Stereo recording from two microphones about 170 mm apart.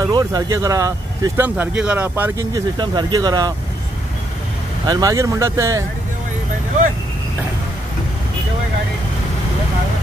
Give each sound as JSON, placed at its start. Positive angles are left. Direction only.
{"t": 0.0, "sound": "speech", "side_deg": -20}
{"t": 2.5, "sound": "speech", "side_deg": -25}
{"t": 4.8, "sound": "speech", "side_deg": -25}